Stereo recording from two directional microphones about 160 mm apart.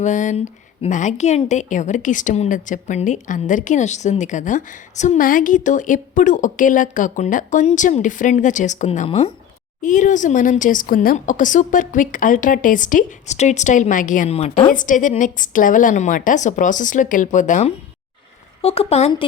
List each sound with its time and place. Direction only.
0.0 s a woman's voice: 50° left (ahead or behind)
9.8 s a woman's voice: 50° left (ahead or behind)
14.7 s a woman's voice: 55° left (ahead or behind)
18.6 s a woman's voice: 40° left (ahead or behind)